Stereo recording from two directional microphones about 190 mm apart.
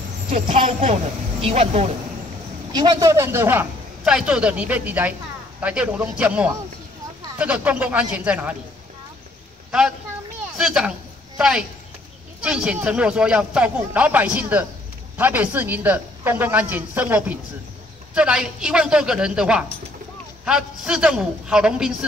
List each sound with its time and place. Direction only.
0.5 s speech: 35° right (ahead or behind)
2.7 s a man's voice: 20° right (ahead or behind)
9.7 s speech: 5° right (ahead or behind)
10.4 s a sound: 5° right (ahead or behind)
11.3 s a woman's voice: 5° right (ahead or behind)